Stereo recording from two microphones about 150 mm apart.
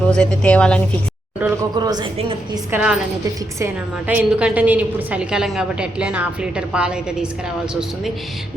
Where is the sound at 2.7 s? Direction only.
10° right (ahead or behind).